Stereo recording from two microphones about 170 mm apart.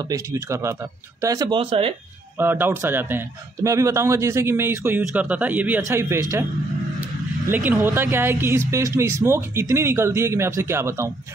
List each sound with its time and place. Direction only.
0.1 s a man's voice: 20° right (ahead or behind)
1.6 s speech: 35° right (ahead or behind)
2.3 s a man's voice: 15° right (ahead or behind)
7.0 s vehicle: 10° right (ahead or behind)
7.7 s a man's voice: 15° right (ahead or behind)